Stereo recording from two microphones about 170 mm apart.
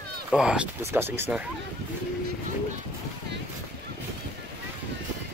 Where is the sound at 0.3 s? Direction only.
5° right (ahead or behind).